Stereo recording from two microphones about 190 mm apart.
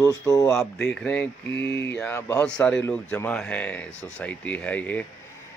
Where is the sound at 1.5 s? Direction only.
65° left (ahead or behind).